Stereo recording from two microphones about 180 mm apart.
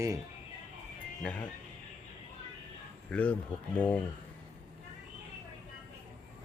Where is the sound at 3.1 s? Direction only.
10° left (ahead or behind).